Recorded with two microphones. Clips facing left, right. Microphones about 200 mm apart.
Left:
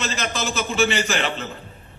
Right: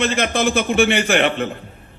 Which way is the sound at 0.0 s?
55° right (ahead or behind).